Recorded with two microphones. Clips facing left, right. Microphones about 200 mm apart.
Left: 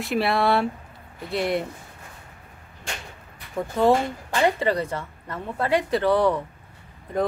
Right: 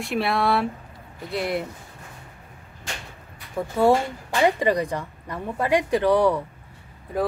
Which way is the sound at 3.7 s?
10° right (ahead or behind).